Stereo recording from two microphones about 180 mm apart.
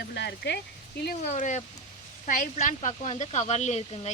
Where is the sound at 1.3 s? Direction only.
40° left (ahead or behind).